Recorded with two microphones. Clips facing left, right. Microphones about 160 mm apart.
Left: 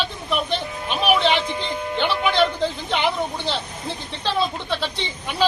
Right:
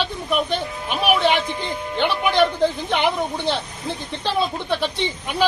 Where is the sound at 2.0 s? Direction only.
15° right (ahead or behind).